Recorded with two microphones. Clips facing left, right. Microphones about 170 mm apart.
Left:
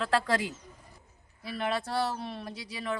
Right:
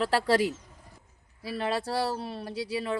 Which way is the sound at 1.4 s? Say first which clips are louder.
Right 2 dB; 30° right (ahead or behind).